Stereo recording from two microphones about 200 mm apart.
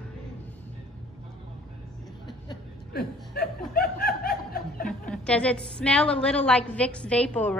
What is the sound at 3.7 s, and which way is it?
Snicker, 50° left (ahead or behind).